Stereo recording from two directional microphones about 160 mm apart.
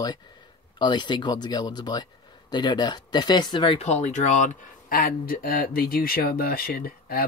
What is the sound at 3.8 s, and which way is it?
Speech, 45° left (ahead or behind).